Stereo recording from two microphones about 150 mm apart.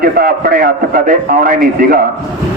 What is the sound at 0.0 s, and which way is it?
A man's voice, 85° right.